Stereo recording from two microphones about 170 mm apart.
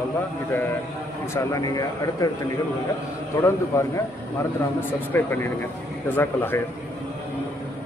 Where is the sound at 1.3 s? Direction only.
20° left (ahead or behind).